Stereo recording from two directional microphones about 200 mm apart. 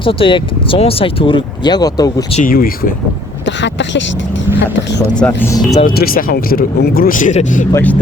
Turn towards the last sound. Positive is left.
turn(degrees=10)  # may be behind; listen again after turning